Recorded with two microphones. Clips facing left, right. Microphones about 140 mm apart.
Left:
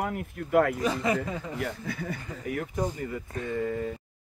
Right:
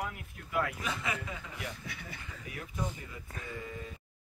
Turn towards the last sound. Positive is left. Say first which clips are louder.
# left 12 dB
turn(degrees=65)  # may be behind; listen again after turning